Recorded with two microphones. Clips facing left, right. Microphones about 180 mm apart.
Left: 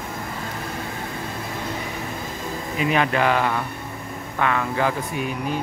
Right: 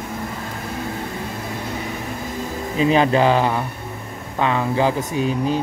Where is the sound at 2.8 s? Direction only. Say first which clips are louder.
Right 5 dB; 30° right (ahead or behind).